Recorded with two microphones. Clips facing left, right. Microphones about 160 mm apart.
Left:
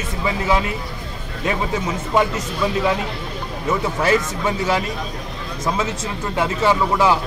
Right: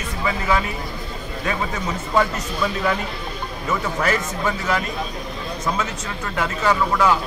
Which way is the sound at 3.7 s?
25° left (ahead or behind).